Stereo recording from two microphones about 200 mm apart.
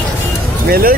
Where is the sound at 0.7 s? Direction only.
50° right (ahead or behind).